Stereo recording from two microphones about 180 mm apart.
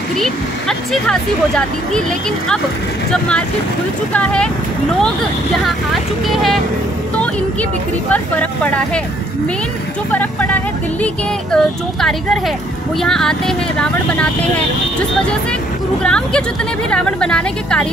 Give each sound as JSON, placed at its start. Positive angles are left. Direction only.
{"t": 0.2, "sound": "speech", "side_deg": 5}
{"t": 6.2, "sound": "speech", "side_deg": 0}
{"t": 8.1, "sound": "speech", "side_deg": 10}
{"t": 10.1, "sound": "speech", "side_deg": 10}
{"t": 16.0, "sound": "speech", "side_deg": 5}